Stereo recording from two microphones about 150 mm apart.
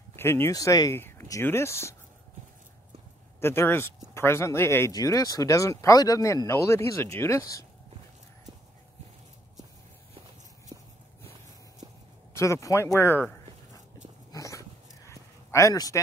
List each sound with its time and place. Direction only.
0.1 s speech: 15° left (ahead or behind)
3.3 s speech: 15° left (ahead or behind)
10.7 s walk: 30° right (ahead or behind)
12.4 s speech: 20° left (ahead or behind)
14.3 s dog: 20° left (ahead or behind)
15.0 s a sound: 20° left (ahead or behind)